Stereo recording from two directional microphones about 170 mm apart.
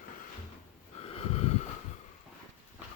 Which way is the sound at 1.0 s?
35° left (ahead or behind).